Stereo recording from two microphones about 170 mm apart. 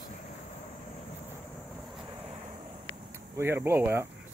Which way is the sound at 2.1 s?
30° right (ahead or behind).